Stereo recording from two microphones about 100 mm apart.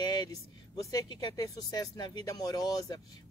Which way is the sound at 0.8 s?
40° left (ahead or behind).